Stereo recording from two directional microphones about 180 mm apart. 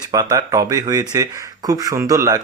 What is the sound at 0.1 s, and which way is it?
Speech, 20° right (ahead or behind).